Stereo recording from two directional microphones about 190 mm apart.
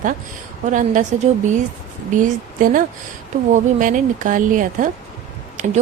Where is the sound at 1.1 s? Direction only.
40° right (ahead or behind).